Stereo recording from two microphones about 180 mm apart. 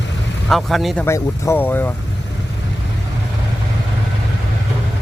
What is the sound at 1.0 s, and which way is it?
Speech, 15° left (ahead or behind).